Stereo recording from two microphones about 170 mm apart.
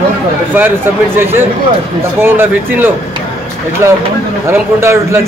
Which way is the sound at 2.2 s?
15° right (ahead or behind).